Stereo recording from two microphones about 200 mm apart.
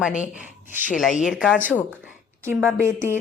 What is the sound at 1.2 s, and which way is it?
A woman's voice, centre (ahead or behind).